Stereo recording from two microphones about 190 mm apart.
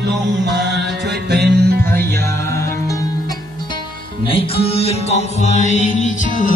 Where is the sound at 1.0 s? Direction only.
60° right (ahead or behind).